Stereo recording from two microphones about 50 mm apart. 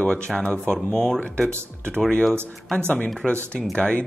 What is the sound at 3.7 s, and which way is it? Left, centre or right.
Speech, left.